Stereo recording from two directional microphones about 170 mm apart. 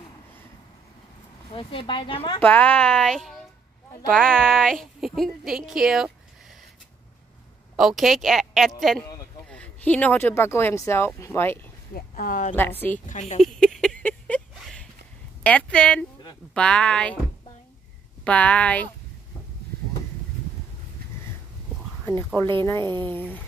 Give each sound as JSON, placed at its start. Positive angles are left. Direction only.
{"t": 1.5, "sound": "speech", "side_deg": 30}
{"t": 2.4, "sound": "a woman's voice", "side_deg": 10}
{"t": 7.7, "sound": "a woman's voice", "side_deg": 0}
{"t": 11.9, "sound": "a woman's voice", "side_deg": 55}
{"t": 13.4, "sound": "a sound", "side_deg": 5}
{"t": 15.4, "sound": "a woman's voice", "side_deg": 5}
{"t": 18.2, "sound": "speech", "side_deg": 5}
{"t": 22.6, "sound": "speech", "side_deg": 15}